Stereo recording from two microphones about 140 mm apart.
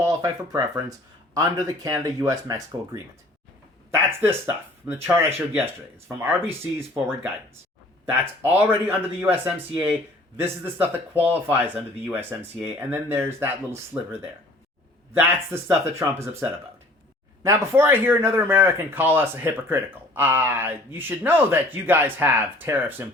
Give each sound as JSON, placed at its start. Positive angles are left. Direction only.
{"t": 0.0, "sound": "speech", "side_deg": -25}
{"t": 4.2, "sound": "speech", "side_deg": -15}
{"t": 6.2, "sound": "speech", "side_deg": -15}